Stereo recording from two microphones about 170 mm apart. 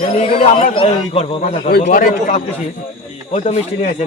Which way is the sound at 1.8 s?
50° left (ahead or behind).